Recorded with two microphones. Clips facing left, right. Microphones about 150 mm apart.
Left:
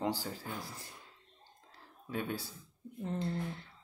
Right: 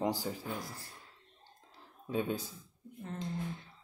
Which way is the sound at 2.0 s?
20° right (ahead or behind).